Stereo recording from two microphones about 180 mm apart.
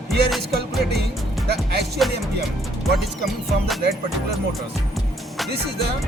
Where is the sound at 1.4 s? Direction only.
60° right (ahead or behind).